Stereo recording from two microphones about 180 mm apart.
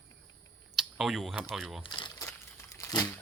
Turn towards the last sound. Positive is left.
turn(degrees=20)  # may be behind; listen again after turning